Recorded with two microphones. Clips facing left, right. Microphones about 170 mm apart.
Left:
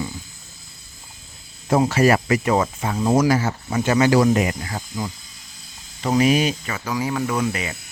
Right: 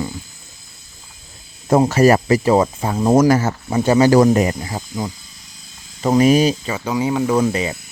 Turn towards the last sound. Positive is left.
turn(degrees=-30)  # may be behind; listen again after turning